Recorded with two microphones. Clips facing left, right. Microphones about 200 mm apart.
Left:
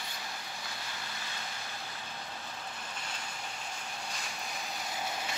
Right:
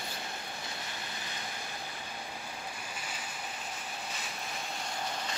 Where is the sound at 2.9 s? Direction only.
10° right (ahead or behind).